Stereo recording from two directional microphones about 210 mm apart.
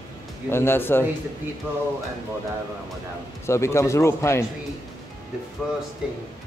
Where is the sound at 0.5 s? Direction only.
10° left (ahead or behind).